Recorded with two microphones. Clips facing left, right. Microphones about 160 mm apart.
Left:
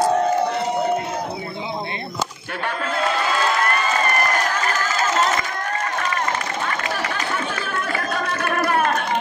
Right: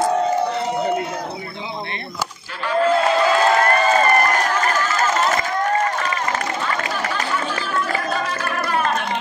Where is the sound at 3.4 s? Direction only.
45° right (ahead or behind).